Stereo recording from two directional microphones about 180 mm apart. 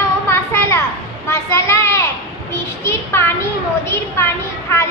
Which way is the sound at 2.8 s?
15° left (ahead or behind).